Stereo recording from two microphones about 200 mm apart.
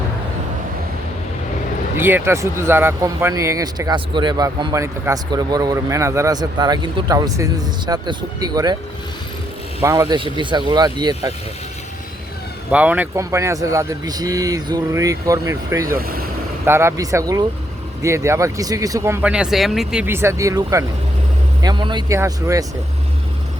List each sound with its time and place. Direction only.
2.0 s speech: 10° right (ahead or behind)
9.8 s speech: 15° right (ahead or behind)
12.7 s speech: 5° right (ahead or behind)
16.0 s speech: 50° right (ahead or behind)
16.6 s speech: 15° right (ahead or behind)